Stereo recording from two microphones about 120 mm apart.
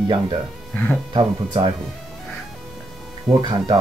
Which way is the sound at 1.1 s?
40° right (ahead or behind).